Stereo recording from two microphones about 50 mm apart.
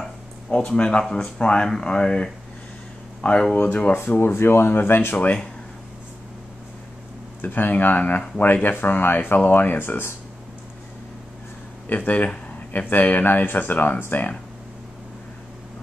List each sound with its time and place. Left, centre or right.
0.5 s speech: left
4.1 s speech: left
5.2 s speech: left
7.4 s speech: left
11.9 s speech: left